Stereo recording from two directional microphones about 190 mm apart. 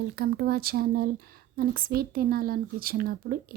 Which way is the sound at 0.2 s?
55° right (ahead or behind).